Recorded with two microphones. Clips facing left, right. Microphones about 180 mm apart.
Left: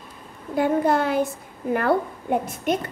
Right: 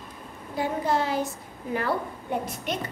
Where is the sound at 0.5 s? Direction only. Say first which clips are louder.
Left 6 dB; 55° left (ahead or behind).